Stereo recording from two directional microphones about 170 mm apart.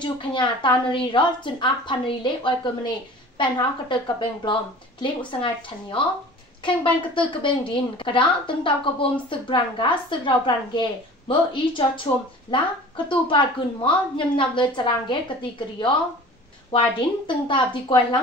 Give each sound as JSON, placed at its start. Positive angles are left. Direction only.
{"t": 0.0, "sound": "a woman's voice", "side_deg": 30}